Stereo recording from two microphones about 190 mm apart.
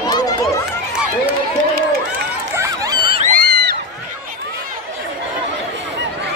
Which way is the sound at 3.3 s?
55° right (ahead or behind).